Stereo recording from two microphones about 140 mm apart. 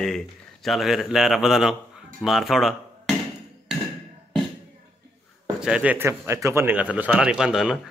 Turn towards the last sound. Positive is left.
turn(degrees=-5)  # may be behind; listen again after turning